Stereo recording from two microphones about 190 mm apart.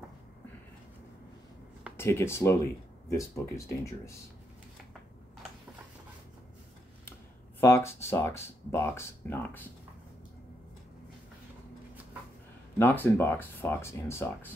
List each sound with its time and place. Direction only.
2.0 s speech: 15° left (ahead or behind)
7.6 s speech: 15° left (ahead or behind)
12.7 s speech: 10° left (ahead or behind)